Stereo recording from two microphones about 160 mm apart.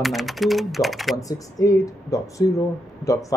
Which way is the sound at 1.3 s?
20° left (ahead or behind).